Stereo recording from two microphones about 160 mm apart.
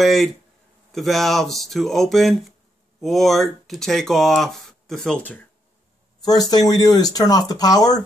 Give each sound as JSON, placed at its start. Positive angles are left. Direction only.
{"t": 0.0, "sound": "speech", "side_deg": 0}
{"t": 6.2, "sound": "speech", "side_deg": 25}